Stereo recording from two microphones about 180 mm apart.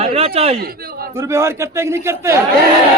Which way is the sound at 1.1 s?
15° right (ahead or behind).